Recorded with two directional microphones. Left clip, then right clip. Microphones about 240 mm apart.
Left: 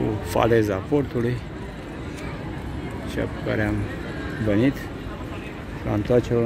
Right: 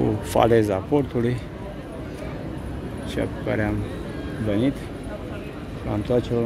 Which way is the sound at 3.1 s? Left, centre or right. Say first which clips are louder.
Right 1 dB; centre.